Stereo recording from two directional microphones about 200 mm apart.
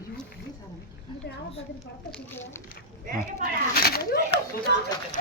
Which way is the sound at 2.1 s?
10° left (ahead or behind).